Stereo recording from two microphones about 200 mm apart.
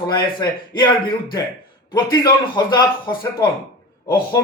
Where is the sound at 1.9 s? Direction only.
20° left (ahead or behind).